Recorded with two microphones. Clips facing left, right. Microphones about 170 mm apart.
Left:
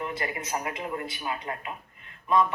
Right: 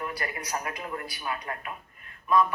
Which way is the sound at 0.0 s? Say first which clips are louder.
Left 2 dB; 25° left (ahead or behind).